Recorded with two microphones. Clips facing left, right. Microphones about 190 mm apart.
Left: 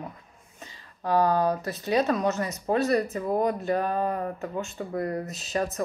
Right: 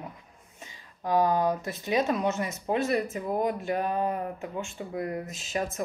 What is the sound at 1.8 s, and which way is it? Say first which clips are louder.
Speech: left 2 dB; 15° right (ahead or behind).